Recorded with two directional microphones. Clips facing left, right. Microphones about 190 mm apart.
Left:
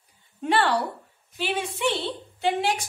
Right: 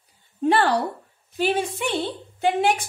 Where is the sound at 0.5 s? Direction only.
40° right (ahead or behind).